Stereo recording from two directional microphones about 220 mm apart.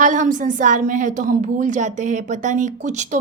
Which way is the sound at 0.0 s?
35° right (ahead or behind).